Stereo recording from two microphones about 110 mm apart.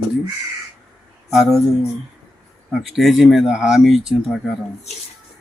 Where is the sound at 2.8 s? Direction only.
Centre (ahead or behind).